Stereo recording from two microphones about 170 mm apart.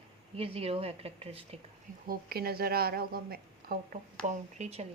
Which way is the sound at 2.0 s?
65° right (ahead or behind).